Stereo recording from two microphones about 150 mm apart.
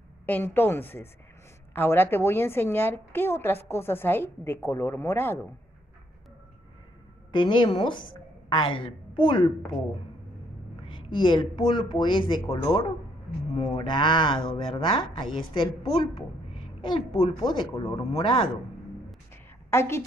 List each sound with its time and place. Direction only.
0.3 s a woman's voice: 15° left (ahead or behind)
7.3 s a woman's voice: 35° left (ahead or behind)
10.9 s speech: 35° left (ahead or behind)
16.5 s a sound: 30° left (ahead or behind)
17.2 s speech: 35° left (ahead or behind)
19.7 s a woman's voice: 20° left (ahead or behind)